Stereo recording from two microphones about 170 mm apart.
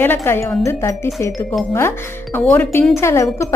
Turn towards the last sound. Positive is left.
turn(degrees=15)  # may be behind; listen again after turning